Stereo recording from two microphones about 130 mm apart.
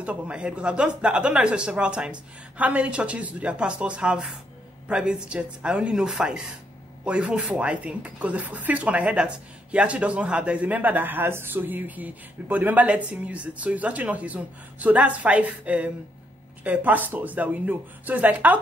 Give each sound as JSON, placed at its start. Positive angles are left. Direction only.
{"t": 0.0, "sound": "speech", "side_deg": -10}